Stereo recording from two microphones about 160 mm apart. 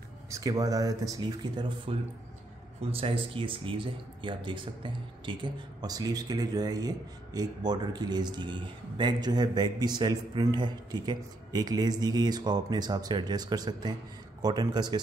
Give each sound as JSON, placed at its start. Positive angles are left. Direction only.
{"t": 0.3, "sound": "speech", "side_deg": -20}